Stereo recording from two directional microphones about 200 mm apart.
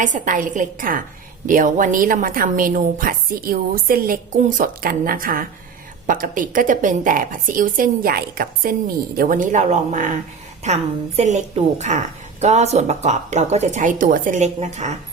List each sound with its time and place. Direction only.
0.0 s a woman's voice: 40° right (ahead or behind)